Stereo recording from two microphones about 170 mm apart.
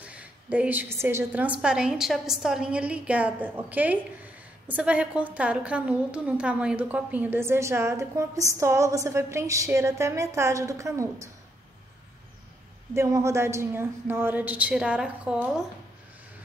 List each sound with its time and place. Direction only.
0.0 s a woman's voice: 10° right (ahead or behind)
12.9 s a woman's voice: 15° right (ahead or behind)